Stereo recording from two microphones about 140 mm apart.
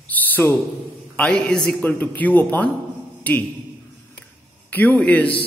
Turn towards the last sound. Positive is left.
turn(degrees=10)  # may be behind; listen again after turning